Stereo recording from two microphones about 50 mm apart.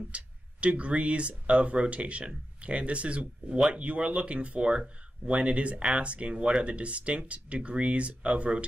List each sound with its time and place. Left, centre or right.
0.1 s speech: right